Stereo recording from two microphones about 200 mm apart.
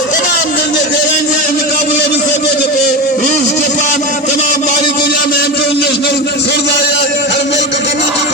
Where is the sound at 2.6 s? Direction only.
40° left (ahead or behind).